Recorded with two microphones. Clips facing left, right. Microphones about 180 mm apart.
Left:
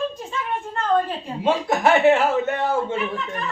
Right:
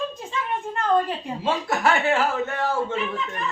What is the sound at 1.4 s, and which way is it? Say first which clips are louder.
Speech: left 4 dB; 20° left (ahead or behind).